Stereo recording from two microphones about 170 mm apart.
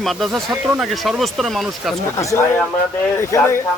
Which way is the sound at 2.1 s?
15° left (ahead or behind).